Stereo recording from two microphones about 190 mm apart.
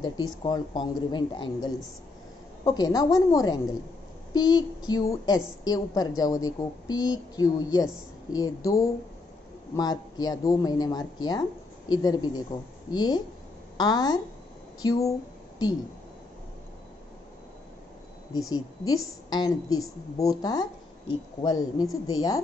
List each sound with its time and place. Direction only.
0.4 s a woman's voice: 20° left (ahead or behind)
18.5 s a woman's voice: 20° left (ahead or behind)